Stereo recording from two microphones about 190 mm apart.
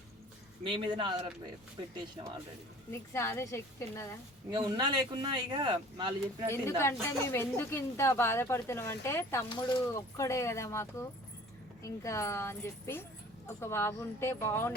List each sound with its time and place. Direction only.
0.6 s speech: 25° right (ahead or behind)
3.1 s speech: 15° left (ahead or behind)
4.5 s speech: 25° right (ahead or behind)
6.5 s speech: 15° left (ahead or behind)